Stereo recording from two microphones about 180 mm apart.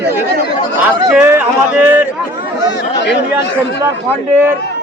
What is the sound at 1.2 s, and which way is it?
Speech, 10° right (ahead or behind).